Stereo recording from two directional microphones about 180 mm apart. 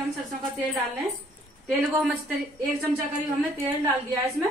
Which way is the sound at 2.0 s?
Centre (ahead or behind).